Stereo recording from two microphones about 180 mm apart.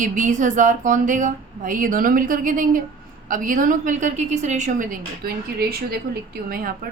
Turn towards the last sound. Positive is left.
turn(degrees=-55)  # may be behind; listen again after turning